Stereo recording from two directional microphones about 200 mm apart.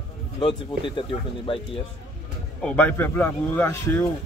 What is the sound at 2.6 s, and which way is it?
A man's voice, 5° left (ahead or behind).